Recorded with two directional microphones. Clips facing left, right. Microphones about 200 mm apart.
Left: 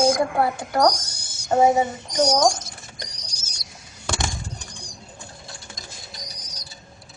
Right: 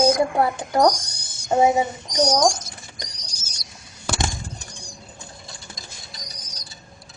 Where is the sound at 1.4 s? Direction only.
10° right (ahead or behind).